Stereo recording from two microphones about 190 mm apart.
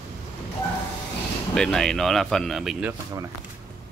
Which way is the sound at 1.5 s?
5° left (ahead or behind).